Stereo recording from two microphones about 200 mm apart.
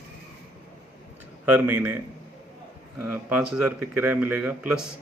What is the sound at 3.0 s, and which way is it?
Speech, 10° right (ahead or behind).